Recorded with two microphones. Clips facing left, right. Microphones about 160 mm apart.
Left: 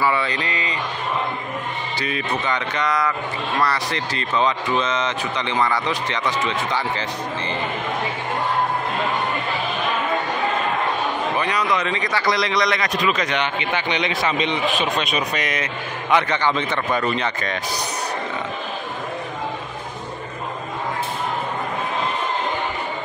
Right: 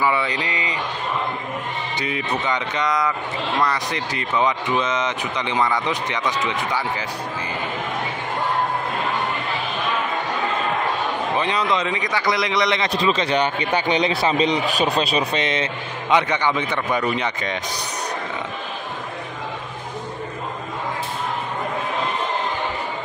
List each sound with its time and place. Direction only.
0.0 s a sound: 15° right (ahead or behind)
2.0 s speech: 20° right (ahead or behind)
11.3 s speech: 25° right (ahead or behind)